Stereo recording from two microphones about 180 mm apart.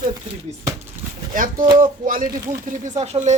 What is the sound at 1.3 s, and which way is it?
Speech, 50° right (ahead or behind).